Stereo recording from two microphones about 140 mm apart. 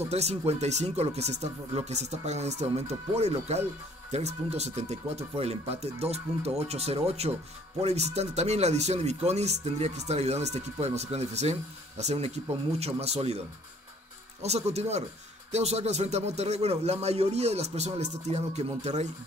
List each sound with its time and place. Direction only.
0.0 s speech: 50° right (ahead or behind)
14.4 s speech: 50° right (ahead or behind)